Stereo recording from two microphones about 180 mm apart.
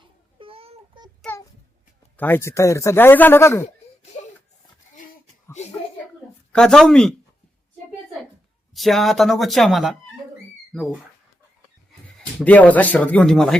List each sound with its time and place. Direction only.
0.3 s babbling: 30° right (ahead or behind)
2.1 s speech: 10° left (ahead or behind)
6.5 s speech: 5° left (ahead or behind)
8.7 s speech: centre (ahead or behind)
12.4 s speech: 10° left (ahead or behind)